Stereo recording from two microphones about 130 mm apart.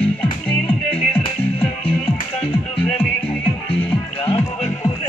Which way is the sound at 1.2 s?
45° left (ahead or behind).